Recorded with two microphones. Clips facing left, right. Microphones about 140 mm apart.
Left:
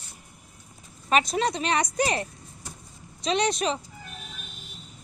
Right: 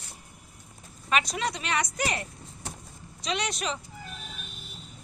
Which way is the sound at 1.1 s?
25° left (ahead or behind).